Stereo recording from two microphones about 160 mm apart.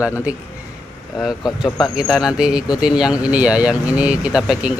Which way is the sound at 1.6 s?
5° right (ahead or behind).